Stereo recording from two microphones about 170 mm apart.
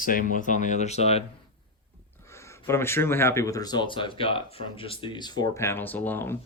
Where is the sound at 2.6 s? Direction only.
15° left (ahead or behind).